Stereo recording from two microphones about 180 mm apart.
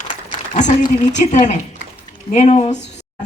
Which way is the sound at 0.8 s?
40° left (ahead or behind).